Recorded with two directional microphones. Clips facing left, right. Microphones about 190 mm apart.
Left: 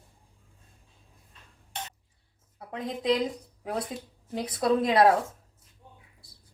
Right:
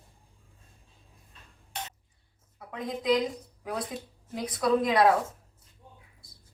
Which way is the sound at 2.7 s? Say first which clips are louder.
Even; 25° left (ahead or behind).